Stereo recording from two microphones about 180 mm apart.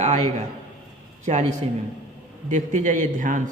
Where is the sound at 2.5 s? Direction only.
45° right (ahead or behind).